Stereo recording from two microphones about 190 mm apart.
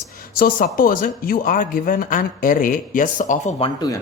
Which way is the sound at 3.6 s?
20° left (ahead or behind).